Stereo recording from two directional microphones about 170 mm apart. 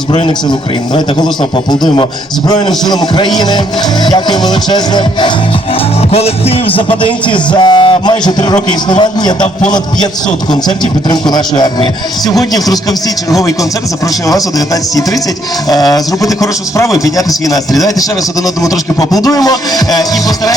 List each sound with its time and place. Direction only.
1.7 s speech: 25° left (ahead or behind)
6.1 s speech: 35° left (ahead or behind)
11.1 s speech: 25° left (ahead or behind)
15.7 s speech: 20° left (ahead or behind)
18.6 s speech: 20° left (ahead or behind)